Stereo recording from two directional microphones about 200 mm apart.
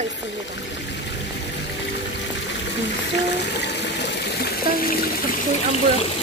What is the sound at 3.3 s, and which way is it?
Water, 60° left (ahead or behind).